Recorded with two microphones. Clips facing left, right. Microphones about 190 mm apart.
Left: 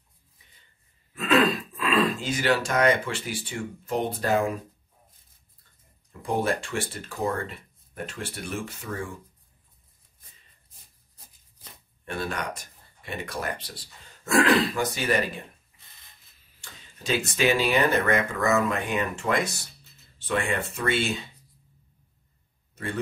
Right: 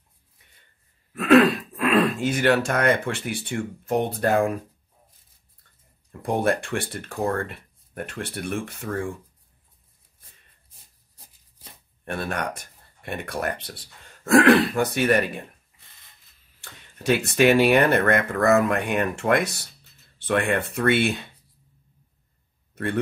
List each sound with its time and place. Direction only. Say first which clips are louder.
1.1 s speech: right 6 dB; 65° right (ahead or behind)
6.2 s speech: right 3 dB; 55° right (ahead or behind)
12.0 s speech: right 3 dB; 55° right (ahead or behind)
16.6 s speech: right 8 dB; 60° right (ahead or behind)